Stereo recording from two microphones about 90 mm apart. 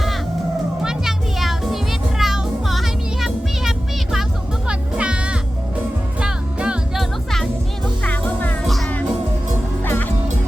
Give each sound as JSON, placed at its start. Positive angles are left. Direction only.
{"t": 0.8, "sound": "music", "side_deg": -5}
{"t": 7.0, "sound": "music", "side_deg": 5}
{"t": 8.0, "sound": "music", "side_deg": 15}
{"t": 9.8, "sound": "music", "side_deg": 25}